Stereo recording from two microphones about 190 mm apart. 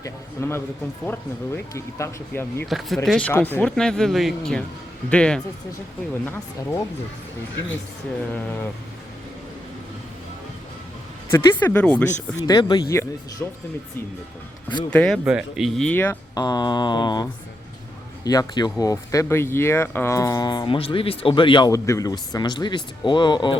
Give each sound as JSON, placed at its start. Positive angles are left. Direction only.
{"t": 0.0, "sound": "speech", "side_deg": 15}
{"t": 2.6, "sound": "speech", "side_deg": 0}
{"t": 8.3, "sound": "speech", "side_deg": 10}
{"t": 11.3, "sound": "speech", "side_deg": 10}
{"t": 12.5, "sound": "speech", "side_deg": 20}
{"t": 14.8, "sound": "speech", "side_deg": 5}
{"t": 16.3, "sound": "speech", "side_deg": 20}
{"t": 18.3, "sound": "speech", "side_deg": 20}